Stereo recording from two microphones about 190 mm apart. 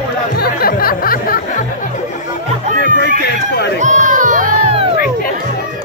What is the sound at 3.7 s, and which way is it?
Crowd, 40° right (ahead or behind).